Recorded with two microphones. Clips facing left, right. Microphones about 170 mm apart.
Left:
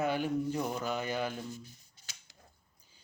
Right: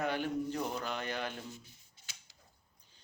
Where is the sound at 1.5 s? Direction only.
40° left (ahead or behind).